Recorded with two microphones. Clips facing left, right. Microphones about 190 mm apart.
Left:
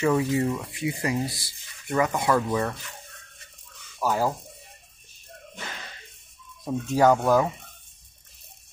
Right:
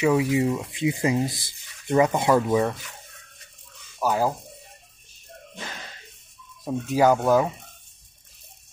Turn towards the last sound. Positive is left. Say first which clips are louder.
# right 1 dB
turn(degrees=0)  # may be behind; listen again after turning